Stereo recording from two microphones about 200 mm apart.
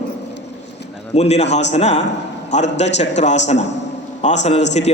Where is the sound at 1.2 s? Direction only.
35° left (ahead or behind).